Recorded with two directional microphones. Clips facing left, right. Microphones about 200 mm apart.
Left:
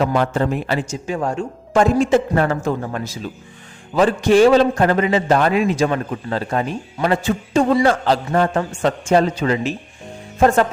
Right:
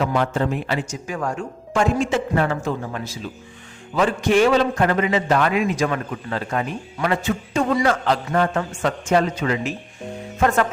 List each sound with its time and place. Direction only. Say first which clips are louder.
0.0 s a man's voice: left 3 dB; 40° left (ahead or behind)
0.9 s a man's voice: left 4 dB; 25° left (ahead or behind); by 3.1 s 45° left (ahead or behind)
3.9 s a man's voice: left 4 dB; 35° left (ahead or behind)